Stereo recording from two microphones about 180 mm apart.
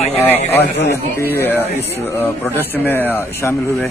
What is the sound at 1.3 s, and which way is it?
Speech, 10° left (ahead or behind).